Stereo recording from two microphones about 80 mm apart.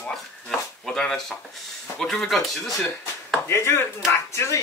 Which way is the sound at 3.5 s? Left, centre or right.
Left.